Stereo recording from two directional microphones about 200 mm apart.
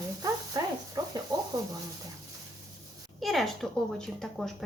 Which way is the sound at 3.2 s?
Centre (ahead or behind).